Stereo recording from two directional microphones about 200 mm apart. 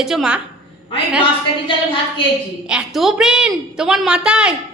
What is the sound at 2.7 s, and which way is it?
A woman's voice, 5° right (ahead or behind).